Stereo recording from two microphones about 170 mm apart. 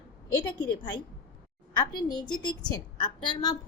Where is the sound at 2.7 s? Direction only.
25° left (ahead or behind).